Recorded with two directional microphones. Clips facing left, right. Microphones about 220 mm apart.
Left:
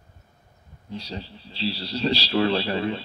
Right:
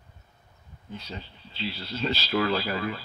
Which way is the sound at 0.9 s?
35° left (ahead or behind).